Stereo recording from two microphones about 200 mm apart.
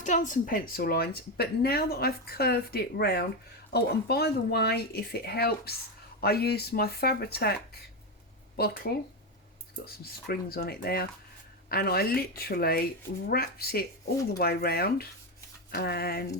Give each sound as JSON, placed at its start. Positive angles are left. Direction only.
{"t": 0.0, "sound": "speech", "side_deg": 40}